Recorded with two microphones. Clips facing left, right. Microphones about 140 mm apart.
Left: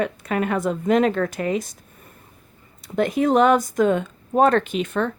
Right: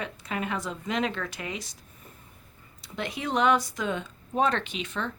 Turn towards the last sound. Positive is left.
turn(degrees=50)  # may be behind; listen again after turning